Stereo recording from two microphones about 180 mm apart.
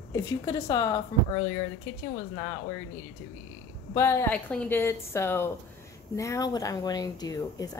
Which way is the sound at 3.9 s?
15° left (ahead or behind).